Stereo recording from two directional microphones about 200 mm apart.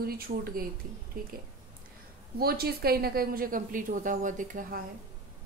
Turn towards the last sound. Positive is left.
turn(degrees=-40)  # may be behind; listen again after turning